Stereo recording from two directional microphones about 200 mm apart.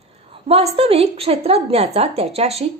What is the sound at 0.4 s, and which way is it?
A woman's voice, 30° right (ahead or behind).